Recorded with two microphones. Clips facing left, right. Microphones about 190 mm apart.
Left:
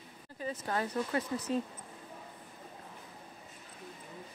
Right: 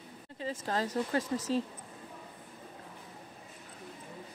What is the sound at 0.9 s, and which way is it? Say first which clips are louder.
Speech: right 2 dB; 90° right.